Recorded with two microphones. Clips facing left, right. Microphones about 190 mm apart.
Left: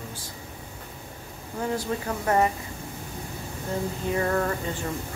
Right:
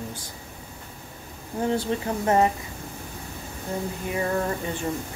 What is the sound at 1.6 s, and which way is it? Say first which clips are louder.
Speech: right 3 dB; 25° right (ahead or behind).